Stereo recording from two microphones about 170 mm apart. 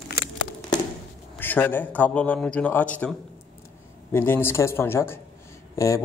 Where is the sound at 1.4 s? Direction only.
10° left (ahead or behind).